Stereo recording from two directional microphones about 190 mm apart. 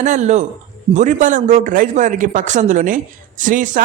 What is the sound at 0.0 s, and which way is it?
Speech, 40° right (ahead or behind).